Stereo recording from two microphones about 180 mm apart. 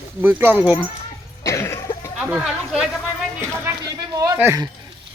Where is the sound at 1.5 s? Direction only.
15° left (ahead or behind).